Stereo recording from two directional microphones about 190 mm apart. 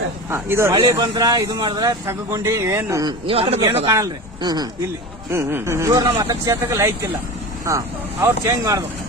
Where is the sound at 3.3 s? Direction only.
30° right (ahead or behind).